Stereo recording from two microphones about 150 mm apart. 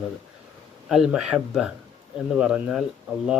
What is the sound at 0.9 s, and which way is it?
Speech, 5° right (ahead or behind).